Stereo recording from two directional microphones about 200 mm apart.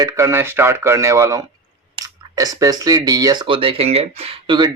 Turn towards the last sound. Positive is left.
turn(degrees=-20)  # may be behind; listen again after turning